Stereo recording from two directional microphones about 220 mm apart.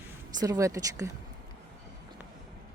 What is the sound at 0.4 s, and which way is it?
Speech, 15° right (ahead or behind).